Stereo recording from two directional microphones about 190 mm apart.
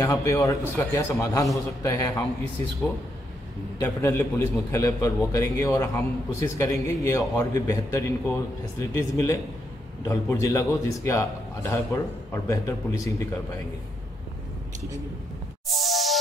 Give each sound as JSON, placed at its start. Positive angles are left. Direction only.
{"t": 0.0, "sound": "a man's voice", "side_deg": 15}
{"t": 3.8, "sound": "a man's voice", "side_deg": 15}
{"t": 15.7, "sound": "music", "side_deg": 0}